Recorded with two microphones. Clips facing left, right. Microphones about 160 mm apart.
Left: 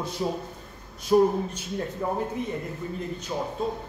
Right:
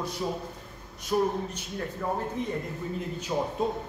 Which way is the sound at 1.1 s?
30° left (ahead or behind).